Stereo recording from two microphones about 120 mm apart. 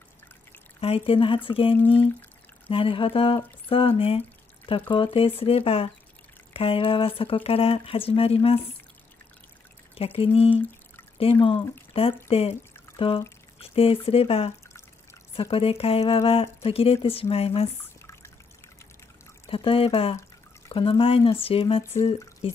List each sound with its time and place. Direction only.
0.7 s speech: 55° left (ahead or behind)
9.9 s speech: 50° left (ahead or behind)
12.9 s pour: 50° left (ahead or behind)
13.6 s speech: 50° left (ahead or behind)
15.5 s speech: 55° left (ahead or behind)
19.4 s speech: 50° left (ahead or behind)